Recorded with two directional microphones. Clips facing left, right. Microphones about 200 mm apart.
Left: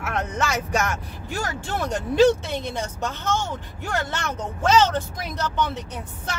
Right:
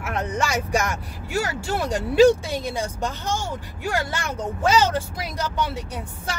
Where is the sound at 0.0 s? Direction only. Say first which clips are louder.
Right 1 dB; 10° right (ahead or behind).